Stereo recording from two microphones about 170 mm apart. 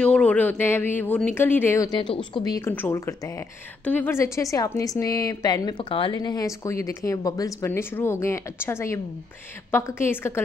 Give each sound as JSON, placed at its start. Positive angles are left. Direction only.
{"t": 0.0, "sound": "a woman's voice", "side_deg": 10}
{"t": 2.6, "sound": "a woman's voice", "side_deg": 15}